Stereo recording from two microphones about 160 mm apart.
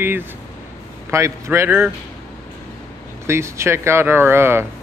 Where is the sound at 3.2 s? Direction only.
15° right (ahead or behind).